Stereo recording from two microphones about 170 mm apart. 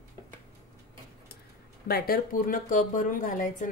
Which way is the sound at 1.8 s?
60° left (ahead or behind).